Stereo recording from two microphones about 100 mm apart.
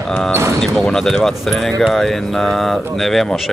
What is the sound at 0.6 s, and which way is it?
Speech, 5° left (ahead or behind).